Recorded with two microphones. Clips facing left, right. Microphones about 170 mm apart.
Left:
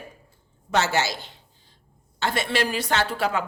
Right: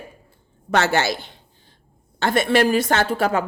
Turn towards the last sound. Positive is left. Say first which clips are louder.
# right 5 dB
turn(degrees=-45)  # may be behind; listen again after turning